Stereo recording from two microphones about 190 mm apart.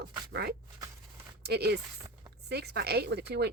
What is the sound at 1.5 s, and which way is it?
Speech, 60° right (ahead or behind).